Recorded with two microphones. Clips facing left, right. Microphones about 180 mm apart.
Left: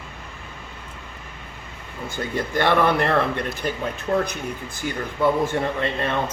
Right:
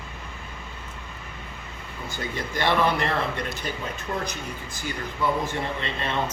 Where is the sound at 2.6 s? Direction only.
55° left (ahead or behind).